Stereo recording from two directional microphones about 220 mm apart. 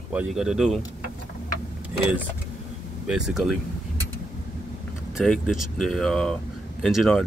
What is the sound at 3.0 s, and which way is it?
Speech, 5° right (ahead or behind).